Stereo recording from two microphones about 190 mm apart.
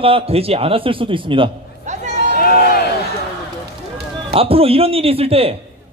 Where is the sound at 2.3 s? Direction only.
50° left (ahead or behind).